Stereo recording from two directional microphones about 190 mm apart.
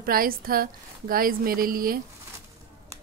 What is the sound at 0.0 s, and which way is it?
A woman's voice, 50° right (ahead or behind).